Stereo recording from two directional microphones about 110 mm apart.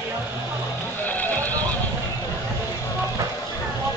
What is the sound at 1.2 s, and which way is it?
Neigh, 15° left (ahead or behind).